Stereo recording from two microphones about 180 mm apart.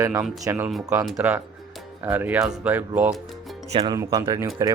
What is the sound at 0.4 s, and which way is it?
Speech, 10° right (ahead or behind).